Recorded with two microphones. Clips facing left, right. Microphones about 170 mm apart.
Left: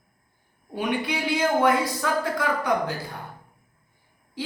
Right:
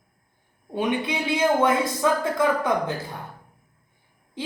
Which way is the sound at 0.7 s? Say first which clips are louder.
Right 2 dB; 20° right (ahead or behind).